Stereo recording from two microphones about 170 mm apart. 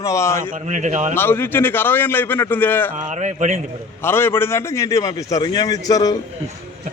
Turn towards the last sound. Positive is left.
turn(degrees=20)  # may be behind; listen again after turning